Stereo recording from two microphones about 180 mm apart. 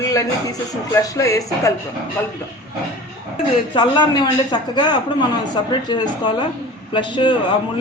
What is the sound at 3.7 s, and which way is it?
Speech, 25° left (ahead or behind).